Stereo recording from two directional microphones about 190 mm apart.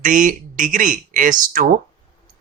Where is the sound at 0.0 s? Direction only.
45° right (ahead or behind).